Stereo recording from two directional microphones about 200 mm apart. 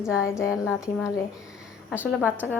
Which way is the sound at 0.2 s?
15° left (ahead or behind).